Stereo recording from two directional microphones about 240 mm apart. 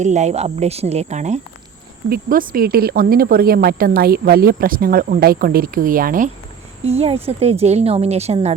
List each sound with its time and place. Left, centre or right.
0.0 s a woman's voice: right